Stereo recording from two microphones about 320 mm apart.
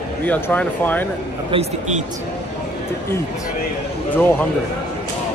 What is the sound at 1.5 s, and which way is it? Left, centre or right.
Speech, centre.